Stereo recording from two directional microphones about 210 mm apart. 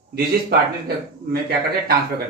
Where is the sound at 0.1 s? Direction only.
45° right (ahead or behind).